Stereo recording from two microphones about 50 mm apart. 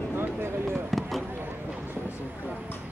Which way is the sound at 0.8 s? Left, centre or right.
Centre.